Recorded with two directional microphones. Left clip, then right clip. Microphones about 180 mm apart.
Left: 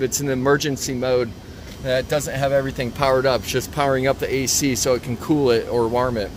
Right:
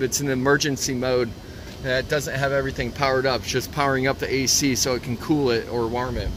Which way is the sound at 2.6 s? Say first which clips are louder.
Left 2 dB; 20° left (ahead or behind).